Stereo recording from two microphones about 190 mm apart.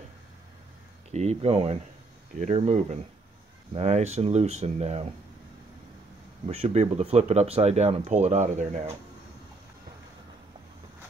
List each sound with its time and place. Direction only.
1.1 s speech: 35° right (ahead or behind)
6.4 s speech: 30° right (ahead or behind)